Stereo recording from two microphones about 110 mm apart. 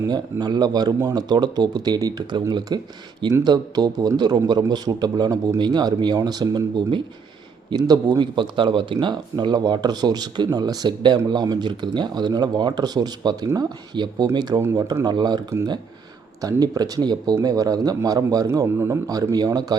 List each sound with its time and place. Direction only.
0.1 s speech: 40° right (ahead or behind)
7.7 s speech: 35° right (ahead or behind)